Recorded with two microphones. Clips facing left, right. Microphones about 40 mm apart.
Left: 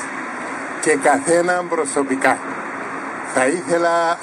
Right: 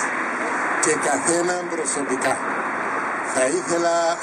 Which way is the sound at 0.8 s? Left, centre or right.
Centre.